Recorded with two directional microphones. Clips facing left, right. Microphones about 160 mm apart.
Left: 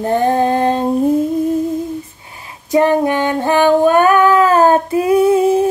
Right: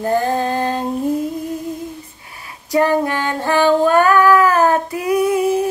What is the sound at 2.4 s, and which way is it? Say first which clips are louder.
Female singing: left 3 dB; 20° left (ahead or behind).